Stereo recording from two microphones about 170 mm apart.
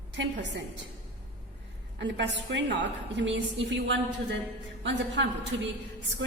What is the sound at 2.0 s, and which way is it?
A woman's voice, 90° right.